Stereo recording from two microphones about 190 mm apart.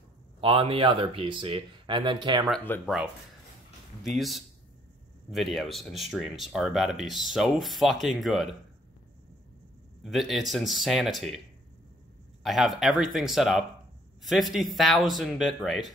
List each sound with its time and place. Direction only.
0.4 s speech: 30° right (ahead or behind)
2.7 s speech: 10° left (ahead or behind)
4.0 s speech: centre (ahead or behind)
10.0 s speech: centre (ahead or behind)
12.4 s speech: centre (ahead or behind)